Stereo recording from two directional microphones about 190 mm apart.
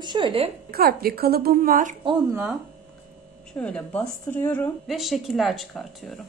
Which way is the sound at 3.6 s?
5° left (ahead or behind).